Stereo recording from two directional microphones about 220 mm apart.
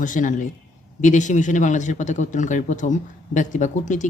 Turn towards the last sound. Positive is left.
turn(degrees=35)  # may be behind; listen again after turning